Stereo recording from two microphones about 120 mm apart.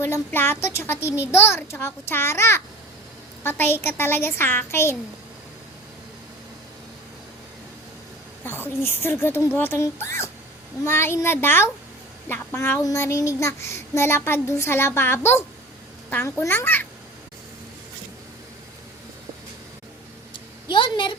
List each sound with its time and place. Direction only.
0.0 s a child's voice: 20° left (ahead or behind)
8.4 s a child's voice: 20° left (ahead or behind)
20.7 s a sound: 40° left (ahead or behind)